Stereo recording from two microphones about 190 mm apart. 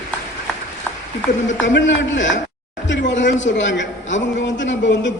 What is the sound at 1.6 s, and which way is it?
A man's voice, 75° left (ahead or behind).